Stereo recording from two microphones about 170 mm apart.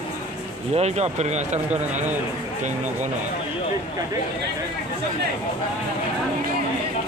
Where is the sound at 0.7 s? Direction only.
40° right (ahead or behind).